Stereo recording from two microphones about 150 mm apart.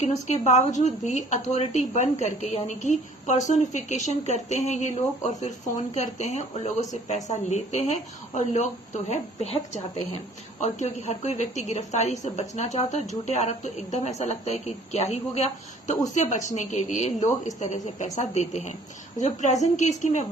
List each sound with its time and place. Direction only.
0.0 s speech: 50° left (ahead or behind)